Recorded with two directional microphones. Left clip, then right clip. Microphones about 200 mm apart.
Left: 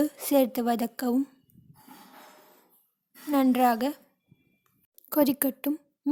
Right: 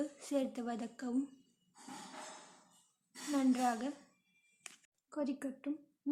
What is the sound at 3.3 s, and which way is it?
Speech, 55° left (ahead or behind).